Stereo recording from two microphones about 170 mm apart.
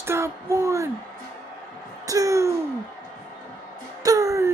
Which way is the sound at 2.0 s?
20° right (ahead or behind).